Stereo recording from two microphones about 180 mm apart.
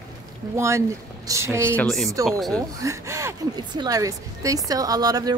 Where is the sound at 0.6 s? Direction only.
15° right (ahead or behind).